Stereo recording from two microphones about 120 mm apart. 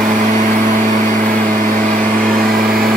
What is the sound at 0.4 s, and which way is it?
Vehicle, 90° right.